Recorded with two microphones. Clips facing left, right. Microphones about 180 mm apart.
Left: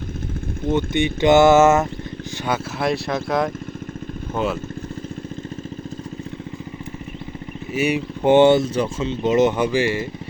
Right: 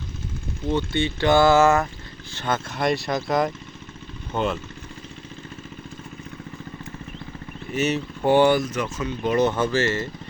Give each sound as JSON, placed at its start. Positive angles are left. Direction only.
{"t": 0.7, "sound": "speech", "side_deg": 15}
{"t": 2.4, "sound": "speech", "side_deg": 5}
{"t": 7.7, "sound": "speech", "side_deg": 10}